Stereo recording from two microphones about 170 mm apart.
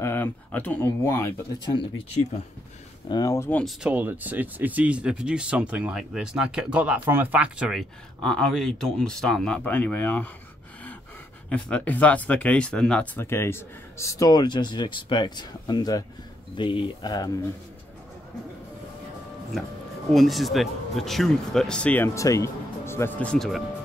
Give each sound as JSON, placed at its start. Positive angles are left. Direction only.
{"t": 0.0, "sound": "speech", "side_deg": 10}
{"t": 3.1, "sound": "speech", "side_deg": 20}
{"t": 3.6, "sound": "speech", "side_deg": -10}
{"t": 11.4, "sound": "speech", "side_deg": 5}
{"t": 20.1, "sound": "speech", "side_deg": 0}